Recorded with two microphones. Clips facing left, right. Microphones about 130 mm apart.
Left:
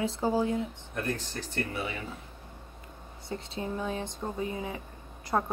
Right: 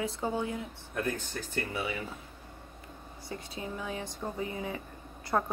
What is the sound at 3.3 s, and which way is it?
A woman's voice, 25° left (ahead or behind).